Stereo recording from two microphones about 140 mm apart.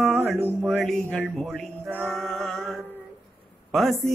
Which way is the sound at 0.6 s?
Centre (ahead or behind).